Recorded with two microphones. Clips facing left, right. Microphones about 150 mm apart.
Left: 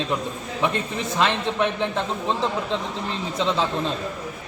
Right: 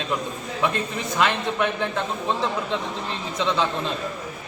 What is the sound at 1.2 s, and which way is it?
Speech, 30° left (ahead or behind).